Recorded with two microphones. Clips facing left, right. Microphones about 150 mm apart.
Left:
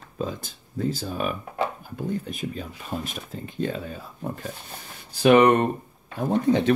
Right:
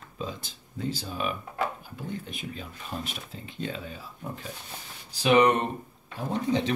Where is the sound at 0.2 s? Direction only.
50° left (ahead or behind).